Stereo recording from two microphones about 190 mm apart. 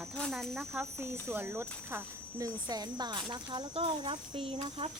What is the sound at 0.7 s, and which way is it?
Speech, 15° right (ahead or behind).